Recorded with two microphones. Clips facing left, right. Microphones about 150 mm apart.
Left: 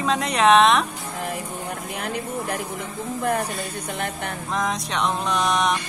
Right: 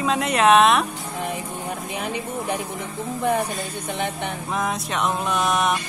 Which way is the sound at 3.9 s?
Centre (ahead or behind).